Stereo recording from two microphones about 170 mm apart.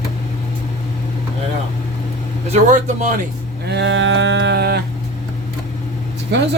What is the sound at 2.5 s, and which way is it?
Speech, 45° right (ahead or behind).